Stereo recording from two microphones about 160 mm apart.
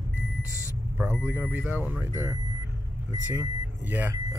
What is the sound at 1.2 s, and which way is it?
Speech, 15° right (ahead or behind).